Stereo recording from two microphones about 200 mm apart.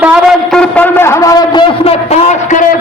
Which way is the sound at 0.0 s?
5° right (ahead or behind).